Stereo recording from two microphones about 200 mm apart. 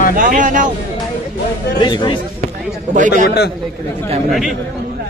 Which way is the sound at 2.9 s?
40° right (ahead or behind).